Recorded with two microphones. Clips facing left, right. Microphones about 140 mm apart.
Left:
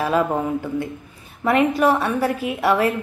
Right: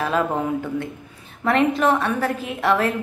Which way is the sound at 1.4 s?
5° left (ahead or behind).